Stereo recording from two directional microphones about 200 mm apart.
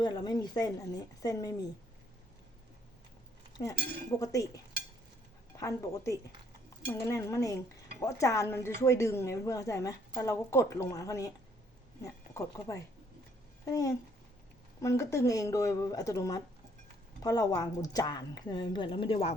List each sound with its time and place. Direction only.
0.0 s a woman's voice: 20° left (ahead or behind)
4.2 s a woman's voice: 15° left (ahead or behind)